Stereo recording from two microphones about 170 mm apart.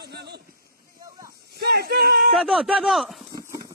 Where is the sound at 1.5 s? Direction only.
65° right (ahead or behind).